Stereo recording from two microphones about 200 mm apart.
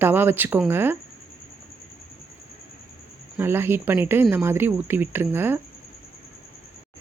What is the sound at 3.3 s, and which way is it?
Speech, 10° right (ahead or behind).